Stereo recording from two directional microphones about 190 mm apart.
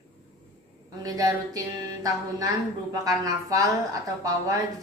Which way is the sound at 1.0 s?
20° right (ahead or behind).